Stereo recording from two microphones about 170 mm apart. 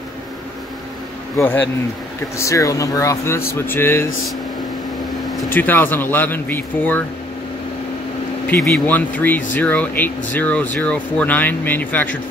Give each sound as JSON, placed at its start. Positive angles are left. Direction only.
{"t": 1.3, "sound": "speech", "side_deg": 10}
{"t": 5.5, "sound": "speech", "side_deg": 10}
{"t": 8.5, "sound": "speech", "side_deg": 5}